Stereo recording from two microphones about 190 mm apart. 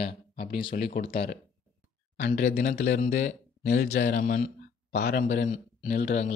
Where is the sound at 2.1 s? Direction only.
45° left (ahead or behind).